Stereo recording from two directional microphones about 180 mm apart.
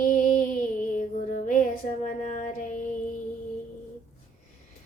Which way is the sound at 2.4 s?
45° left (ahead or behind).